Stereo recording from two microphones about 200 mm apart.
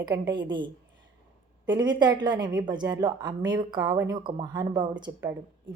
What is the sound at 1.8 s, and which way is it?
A woman's voice, 20° right (ahead or behind).